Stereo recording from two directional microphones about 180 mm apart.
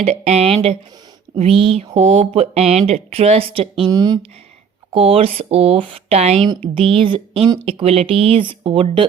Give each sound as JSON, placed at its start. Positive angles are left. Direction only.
{"t": 0.0, "sound": "speech", "side_deg": -35}